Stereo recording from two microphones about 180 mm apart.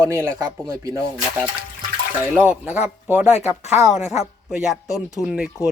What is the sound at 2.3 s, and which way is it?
Speech, 10° right (ahead or behind).